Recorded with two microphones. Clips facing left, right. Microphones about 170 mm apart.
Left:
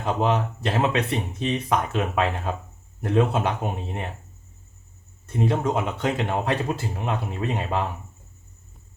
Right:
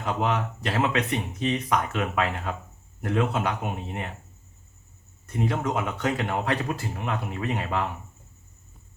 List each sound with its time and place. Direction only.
0.0 s speech: 30° left (ahead or behind)
5.2 s speech: 25° left (ahead or behind)